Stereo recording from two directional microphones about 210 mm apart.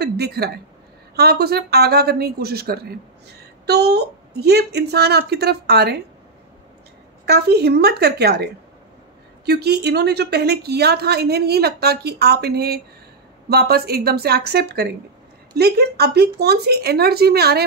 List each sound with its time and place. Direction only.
0.0 s a woman's voice: 50° right (ahead or behind)
7.2 s a woman's voice: 50° right (ahead or behind)
9.5 s a woman's voice: 50° right (ahead or behind)